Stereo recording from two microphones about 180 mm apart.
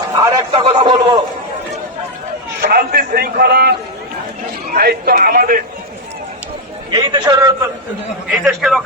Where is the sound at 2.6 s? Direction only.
55° right (ahead or behind).